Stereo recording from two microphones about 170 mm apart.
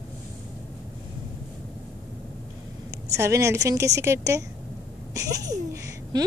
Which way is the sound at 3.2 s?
15° right (ahead or behind).